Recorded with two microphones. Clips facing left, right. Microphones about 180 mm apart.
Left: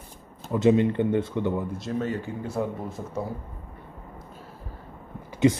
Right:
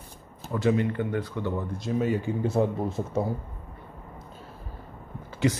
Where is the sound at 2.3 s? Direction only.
20° right (ahead or behind).